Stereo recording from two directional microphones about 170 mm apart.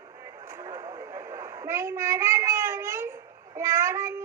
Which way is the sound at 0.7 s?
20° right (ahead or behind).